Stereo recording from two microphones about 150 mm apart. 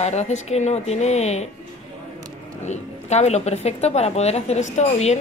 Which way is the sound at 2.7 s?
50° left (ahead or behind).